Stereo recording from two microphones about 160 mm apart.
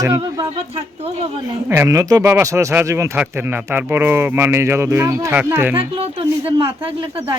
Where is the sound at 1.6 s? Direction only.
15° right (ahead or behind).